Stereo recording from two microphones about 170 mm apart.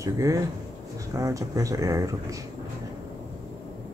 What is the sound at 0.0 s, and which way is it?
Speech, 20° right (ahead or behind).